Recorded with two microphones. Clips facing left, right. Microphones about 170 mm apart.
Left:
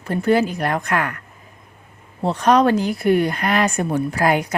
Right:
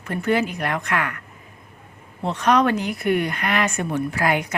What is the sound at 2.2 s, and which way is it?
Speech, 35° left (ahead or behind).